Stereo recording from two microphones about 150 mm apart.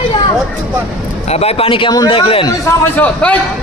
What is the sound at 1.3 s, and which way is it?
A man's voice, 40° left (ahead or behind).